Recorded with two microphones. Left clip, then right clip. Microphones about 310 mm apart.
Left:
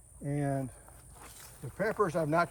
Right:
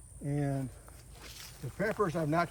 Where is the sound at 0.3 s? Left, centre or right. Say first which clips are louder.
Left 2 dB; centre.